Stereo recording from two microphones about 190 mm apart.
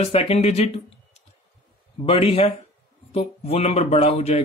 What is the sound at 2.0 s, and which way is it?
A man's voice, 30° left (ahead or behind).